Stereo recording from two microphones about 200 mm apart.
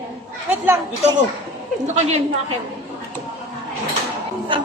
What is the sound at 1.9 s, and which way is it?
Speech, 30° right (ahead or behind).